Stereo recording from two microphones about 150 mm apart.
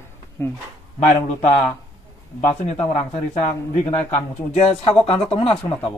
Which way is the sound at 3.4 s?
45° left (ahead or behind).